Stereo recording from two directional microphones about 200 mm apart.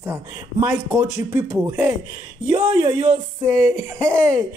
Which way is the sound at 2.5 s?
25° right (ahead or behind).